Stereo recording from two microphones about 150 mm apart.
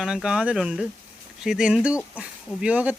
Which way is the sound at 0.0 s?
5° right (ahead or behind).